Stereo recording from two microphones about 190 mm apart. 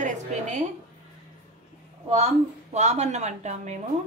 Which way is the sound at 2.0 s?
35° right (ahead or behind).